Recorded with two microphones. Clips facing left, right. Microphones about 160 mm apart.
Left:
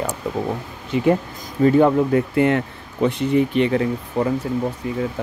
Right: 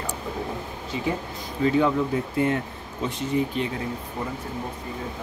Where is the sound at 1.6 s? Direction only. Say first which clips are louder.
Left 7 dB; 50° left (ahead or behind); by 4.3 s 75° left (ahead or behind).